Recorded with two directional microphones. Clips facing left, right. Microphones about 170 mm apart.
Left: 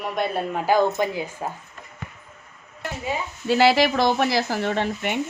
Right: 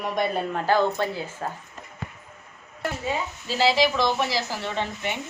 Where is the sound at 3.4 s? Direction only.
60° left (ahead or behind).